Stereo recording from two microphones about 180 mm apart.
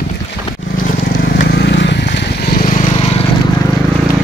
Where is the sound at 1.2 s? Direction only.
65° left (ahead or behind); by 2.8 s 50° left (ahead or behind).